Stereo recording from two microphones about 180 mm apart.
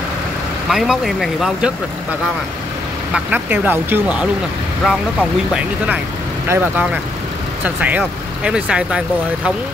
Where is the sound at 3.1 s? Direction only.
10° right (ahead or behind).